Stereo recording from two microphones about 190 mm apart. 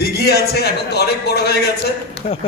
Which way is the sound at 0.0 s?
55° left (ahead or behind).